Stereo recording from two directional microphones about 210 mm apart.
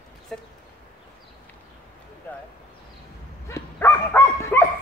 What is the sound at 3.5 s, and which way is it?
Dog, 10° left (ahead or behind).